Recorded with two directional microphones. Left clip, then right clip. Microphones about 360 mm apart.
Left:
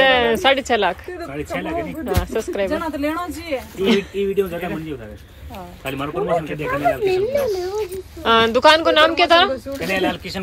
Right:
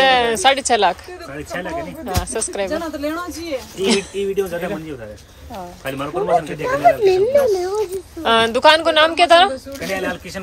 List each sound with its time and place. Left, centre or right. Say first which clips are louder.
0.0 s speech: right 1 dB; centre
2.0 s speech: even; centre
3.8 s speech: even; centre
6.2 s speech: right 4 dB; right
7.8 s speech: right 2 dB; centre